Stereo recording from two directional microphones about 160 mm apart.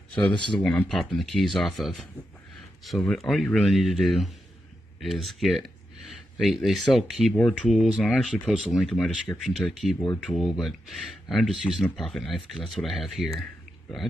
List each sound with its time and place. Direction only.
0.3 s speech: 30° left (ahead or behind)
0.6 s speech: 5° left (ahead or behind)